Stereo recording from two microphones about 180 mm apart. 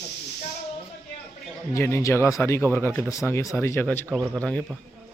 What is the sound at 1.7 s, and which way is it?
A man's voice, 15° left (ahead or behind).